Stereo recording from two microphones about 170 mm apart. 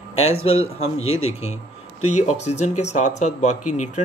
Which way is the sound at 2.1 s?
40° left (ahead or behind).